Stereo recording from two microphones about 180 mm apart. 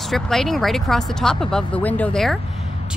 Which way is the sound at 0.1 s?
Centre (ahead or behind).